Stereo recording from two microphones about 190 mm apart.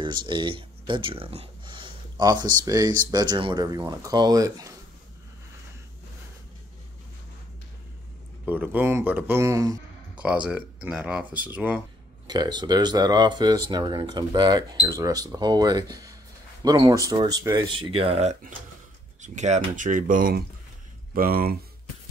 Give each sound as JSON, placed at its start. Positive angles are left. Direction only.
{"t": 0.0, "sound": "speech", "side_deg": -25}
{"t": 8.5, "sound": "speech", "side_deg": -10}
{"t": 12.3, "sound": "speech", "side_deg": -20}